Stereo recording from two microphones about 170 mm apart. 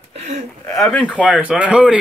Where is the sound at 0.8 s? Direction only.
5° left (ahead or behind).